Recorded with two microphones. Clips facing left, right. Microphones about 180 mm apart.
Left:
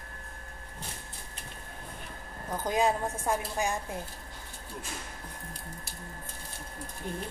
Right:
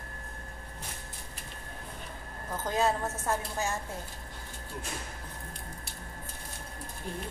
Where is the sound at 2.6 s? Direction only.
15° left (ahead or behind).